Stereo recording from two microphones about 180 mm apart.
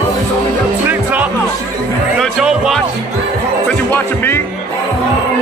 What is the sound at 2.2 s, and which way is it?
Music, 5° right (ahead or behind).